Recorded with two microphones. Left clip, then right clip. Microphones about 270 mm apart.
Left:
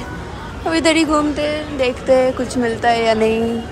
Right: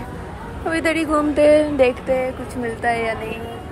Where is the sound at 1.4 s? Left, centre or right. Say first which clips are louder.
Right 6 dB; centre.